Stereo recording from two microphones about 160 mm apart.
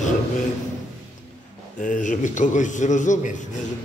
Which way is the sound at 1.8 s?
55° left (ahead or behind).